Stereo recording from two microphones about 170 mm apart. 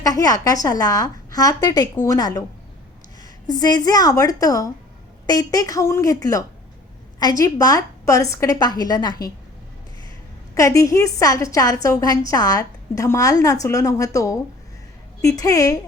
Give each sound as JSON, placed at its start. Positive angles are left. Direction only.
{"t": 0.0, "sound": "a woman's voice", "side_deg": 20}
{"t": 3.4, "sound": "a woman's voice", "side_deg": 20}
{"t": 7.2, "sound": "a woman's voice", "side_deg": 20}
{"t": 10.5, "sound": "a woman's voice", "side_deg": 20}